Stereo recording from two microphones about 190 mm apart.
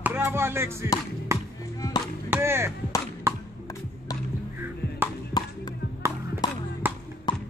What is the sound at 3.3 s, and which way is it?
Music, 15° right (ahead or behind).